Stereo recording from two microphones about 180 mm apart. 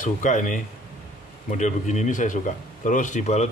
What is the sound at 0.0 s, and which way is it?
Speech, 45° left (ahead or behind).